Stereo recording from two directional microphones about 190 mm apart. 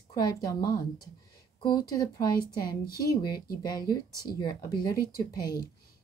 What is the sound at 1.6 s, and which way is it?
Speech, 20° left (ahead or behind).